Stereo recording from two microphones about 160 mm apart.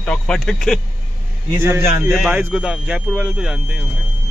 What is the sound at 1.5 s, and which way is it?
Speech, 15° right (ahead or behind).